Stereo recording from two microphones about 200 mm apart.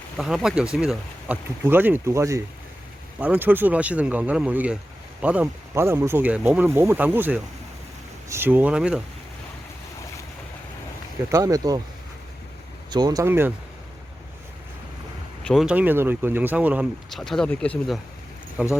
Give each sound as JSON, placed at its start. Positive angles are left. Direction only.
{"t": 0.2, "sound": "speech", "side_deg": 0}
{"t": 11.3, "sound": "speech", "side_deg": -15}
{"t": 12.9, "sound": "speech", "side_deg": -20}
{"t": 15.4, "sound": "speech", "side_deg": 0}